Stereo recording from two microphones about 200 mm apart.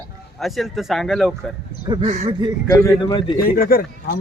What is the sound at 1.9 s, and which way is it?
Speech, 35° right (ahead or behind).